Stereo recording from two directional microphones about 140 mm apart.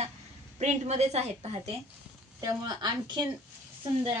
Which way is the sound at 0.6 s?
50° right (ahead or behind).